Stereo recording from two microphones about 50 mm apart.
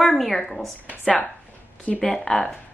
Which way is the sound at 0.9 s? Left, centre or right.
Left.